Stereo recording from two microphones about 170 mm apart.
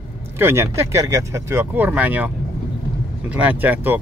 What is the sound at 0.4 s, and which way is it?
Speech, 15° right (ahead or behind).